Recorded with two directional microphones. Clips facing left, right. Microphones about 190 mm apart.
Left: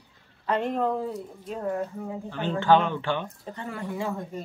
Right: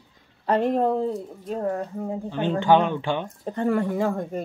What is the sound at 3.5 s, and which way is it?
Speech, 50° right (ahead or behind).